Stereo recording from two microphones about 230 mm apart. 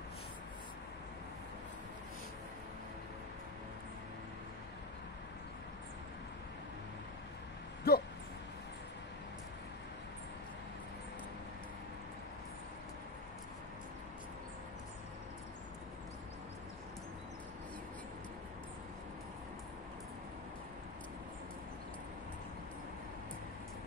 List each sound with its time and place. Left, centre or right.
7.9 s dog: left